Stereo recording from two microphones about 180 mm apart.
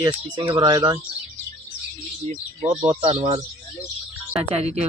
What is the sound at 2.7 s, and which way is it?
Speech, 35° right (ahead or behind).